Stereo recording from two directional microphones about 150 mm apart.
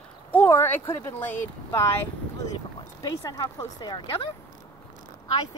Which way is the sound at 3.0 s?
25° left (ahead or behind).